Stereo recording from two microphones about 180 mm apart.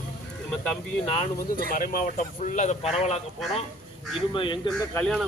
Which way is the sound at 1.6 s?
55° left (ahead or behind).